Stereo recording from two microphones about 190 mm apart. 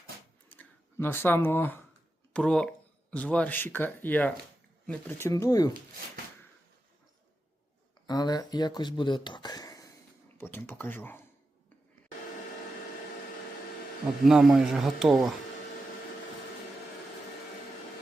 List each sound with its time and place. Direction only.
0.4 s a sound: 10° left (ahead or behind)
2.3 s speech: 5° left (ahead or behind)
8.0 s speech: 20° left (ahead or behind)
14.3 s speech: centre (ahead or behind)